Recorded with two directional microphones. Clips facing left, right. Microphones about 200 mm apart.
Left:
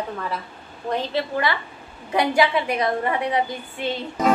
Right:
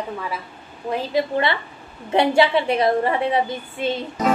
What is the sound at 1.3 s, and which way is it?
A woman's voice, 25° right (ahead or behind).